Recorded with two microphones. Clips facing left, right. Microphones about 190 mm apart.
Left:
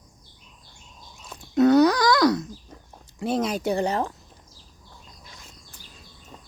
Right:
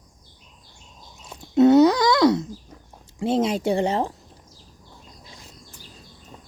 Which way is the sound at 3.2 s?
25° right (ahead or behind).